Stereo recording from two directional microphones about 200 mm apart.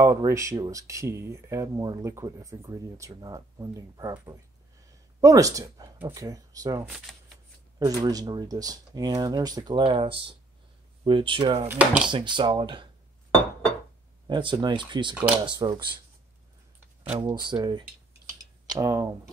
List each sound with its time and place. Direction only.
0.0 s speech: 15° right (ahead or behind)
11.6 s speech: 10° right (ahead or behind)
12.1 s speech: 25° right (ahead or behind)
14.2 s speech: 25° right (ahead or behind)
17.1 s speech: 20° right (ahead or behind)